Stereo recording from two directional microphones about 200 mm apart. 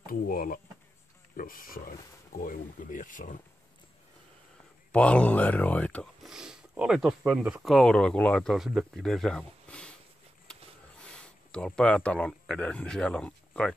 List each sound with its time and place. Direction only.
0.0 s speech: 45° left (ahead or behind)
4.9 s speech: 5° left (ahead or behind)
11.1 s speech: 5° left (ahead or behind)